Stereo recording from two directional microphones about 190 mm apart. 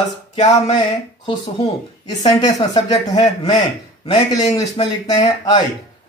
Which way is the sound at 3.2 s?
30° left (ahead or behind).